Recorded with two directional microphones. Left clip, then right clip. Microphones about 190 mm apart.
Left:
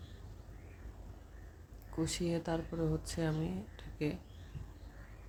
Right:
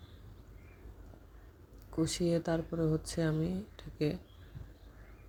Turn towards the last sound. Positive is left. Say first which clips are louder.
# right 4 dB
turn(degrees=-25)  # may be behind; listen again after turning